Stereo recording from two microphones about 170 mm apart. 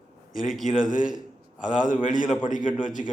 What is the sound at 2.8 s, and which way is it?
Speech, 25° right (ahead or behind).